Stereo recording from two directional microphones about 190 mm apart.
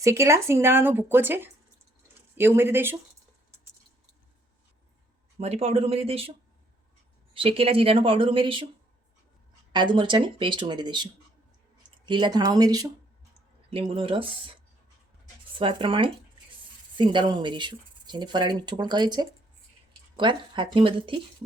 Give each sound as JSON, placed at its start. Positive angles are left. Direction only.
{"t": 0.0, "sound": "speech", "side_deg": -15}
{"t": 5.4, "sound": "speech", "side_deg": -35}
{"t": 7.3, "sound": "speech", "side_deg": -30}
{"t": 9.7, "sound": "speech", "side_deg": -25}
{"t": 15.5, "sound": "speech", "side_deg": -25}